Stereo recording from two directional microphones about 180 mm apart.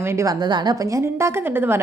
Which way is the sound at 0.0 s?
15° right (ahead or behind).